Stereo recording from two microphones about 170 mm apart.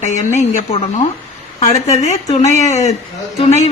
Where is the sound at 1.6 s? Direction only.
40° left (ahead or behind).